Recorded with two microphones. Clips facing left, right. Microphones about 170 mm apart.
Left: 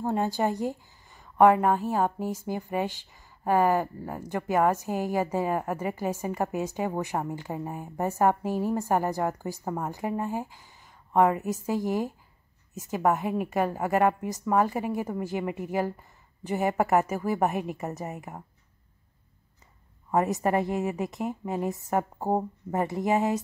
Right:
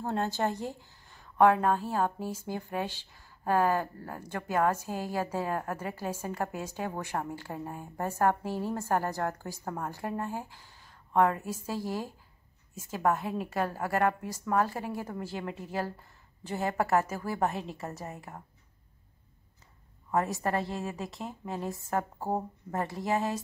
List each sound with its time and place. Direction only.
0.0 s a woman's voice: 15° left (ahead or behind)
20.1 s a woman's voice: 15° left (ahead or behind)